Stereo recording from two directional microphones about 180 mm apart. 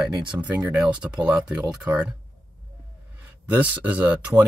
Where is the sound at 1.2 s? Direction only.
25° right (ahead or behind).